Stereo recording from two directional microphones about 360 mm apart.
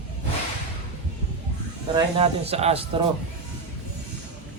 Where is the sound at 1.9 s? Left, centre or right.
Centre.